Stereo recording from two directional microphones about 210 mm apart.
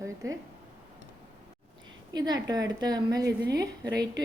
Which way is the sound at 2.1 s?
20° right (ahead or behind).